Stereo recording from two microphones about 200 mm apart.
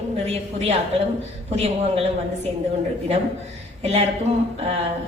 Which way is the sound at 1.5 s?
30° right (ahead or behind).